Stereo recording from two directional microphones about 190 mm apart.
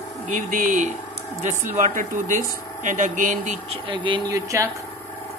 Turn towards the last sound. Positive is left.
turn(degrees=-15)  # may be behind; listen again after turning